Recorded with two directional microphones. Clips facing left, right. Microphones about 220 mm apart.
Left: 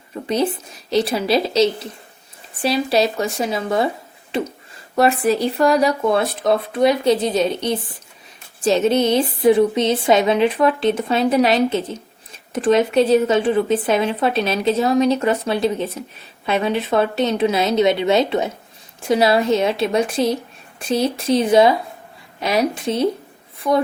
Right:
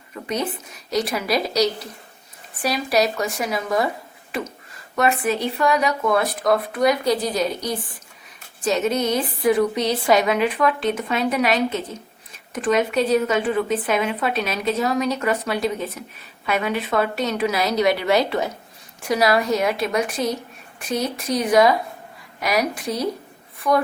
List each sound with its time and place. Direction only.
0.1 s speech: 30° left (ahead or behind)
4.3 s a sound: 25° left (ahead or behind)
4.9 s speech: 35° left (ahead or behind)